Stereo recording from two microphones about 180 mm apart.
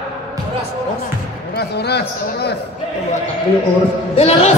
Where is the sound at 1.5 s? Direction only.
65° left (ahead or behind).